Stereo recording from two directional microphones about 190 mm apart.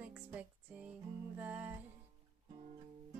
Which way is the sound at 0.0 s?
10° right (ahead or behind).